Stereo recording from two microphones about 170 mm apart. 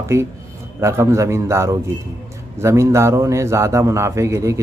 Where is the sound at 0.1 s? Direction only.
15° right (ahead or behind).